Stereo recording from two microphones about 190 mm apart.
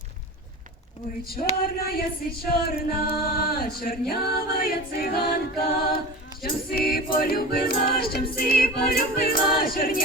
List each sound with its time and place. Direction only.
1.3 s music: 50° left (ahead or behind)